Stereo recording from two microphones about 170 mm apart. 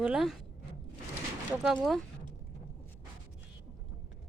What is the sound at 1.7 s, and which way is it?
Speech, centre (ahead or behind).